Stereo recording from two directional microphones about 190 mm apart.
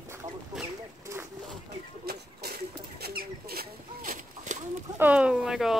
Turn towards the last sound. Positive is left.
turn(degrees=0)  # may be behind; listen again after turning